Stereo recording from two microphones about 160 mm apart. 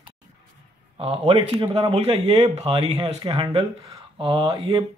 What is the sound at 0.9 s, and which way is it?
Speech, 35° right (ahead or behind).